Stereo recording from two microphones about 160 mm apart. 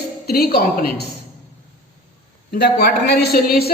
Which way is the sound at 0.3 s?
80° left.